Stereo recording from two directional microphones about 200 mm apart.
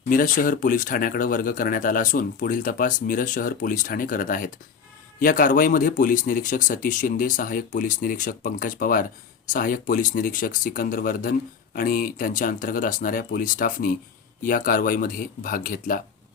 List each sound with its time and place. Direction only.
0.1 s speech: 45° left (ahead or behind)